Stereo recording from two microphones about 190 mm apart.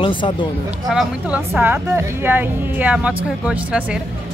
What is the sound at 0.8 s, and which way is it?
A woman's voice, 5° right (ahead or behind).